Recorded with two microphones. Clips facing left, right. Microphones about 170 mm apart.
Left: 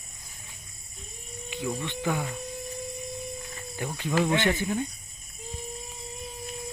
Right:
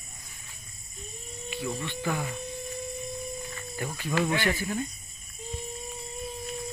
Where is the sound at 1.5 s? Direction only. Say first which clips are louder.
Left 1 dB; 15° left (ahead or behind).